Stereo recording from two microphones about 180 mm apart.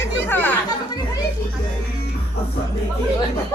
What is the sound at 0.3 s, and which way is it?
Chatter, 10° left (ahead or behind).